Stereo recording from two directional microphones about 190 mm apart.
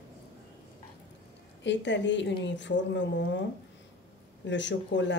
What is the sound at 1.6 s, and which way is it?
A woman's voice, 70° left (ahead or behind).